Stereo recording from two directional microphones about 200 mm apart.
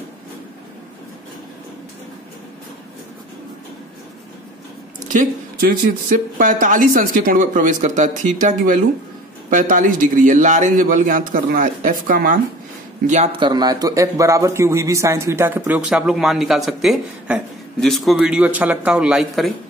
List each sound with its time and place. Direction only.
5.1 s speech: 45° right (ahead or behind)
13.4 s a man's voice: 20° right (ahead or behind); by 19.5 s centre (ahead or behind)